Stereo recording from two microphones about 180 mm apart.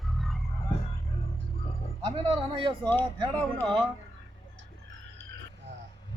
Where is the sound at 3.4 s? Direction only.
5° left (ahead or behind).